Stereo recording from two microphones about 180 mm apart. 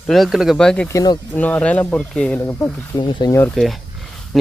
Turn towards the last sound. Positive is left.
turn(degrees=0)  # may be behind; listen again after turning